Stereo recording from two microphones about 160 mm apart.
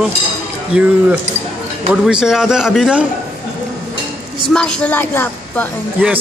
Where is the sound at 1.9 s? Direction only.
5° right (ahead or behind).